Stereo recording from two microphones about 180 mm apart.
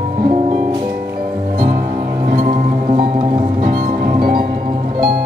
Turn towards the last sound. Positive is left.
turn(degrees=-55)  # may be behind; listen again after turning